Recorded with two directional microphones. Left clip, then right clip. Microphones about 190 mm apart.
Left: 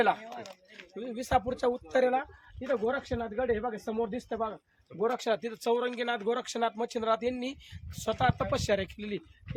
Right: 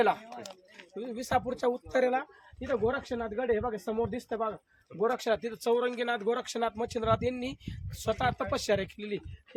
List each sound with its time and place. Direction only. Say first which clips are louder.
0.9 s speech: left 1 dB; centre (ahead or behind)